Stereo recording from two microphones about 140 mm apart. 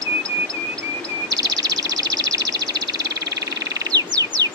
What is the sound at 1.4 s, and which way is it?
Bird, 25° right (ahead or behind).